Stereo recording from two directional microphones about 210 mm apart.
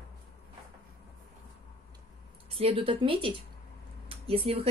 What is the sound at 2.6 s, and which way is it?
Speech, 25° right (ahead or behind).